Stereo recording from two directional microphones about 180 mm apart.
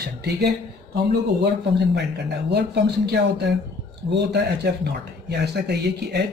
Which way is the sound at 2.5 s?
65° right (ahead or behind).